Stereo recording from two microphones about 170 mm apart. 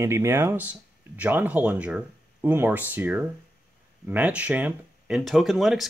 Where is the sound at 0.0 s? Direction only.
15° right (ahead or behind).